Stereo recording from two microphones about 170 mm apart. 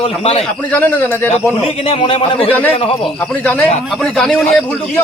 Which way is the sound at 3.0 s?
5° left (ahead or behind).